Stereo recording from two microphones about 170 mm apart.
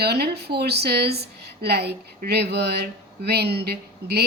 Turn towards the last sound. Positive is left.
turn(degrees=-70)  # may be behind; listen again after turning